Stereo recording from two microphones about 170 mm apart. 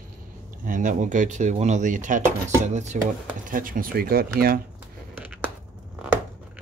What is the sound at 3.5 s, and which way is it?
Speech, 55° right (ahead or behind).